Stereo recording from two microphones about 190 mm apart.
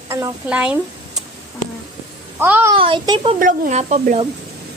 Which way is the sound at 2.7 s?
25° right (ahead or behind).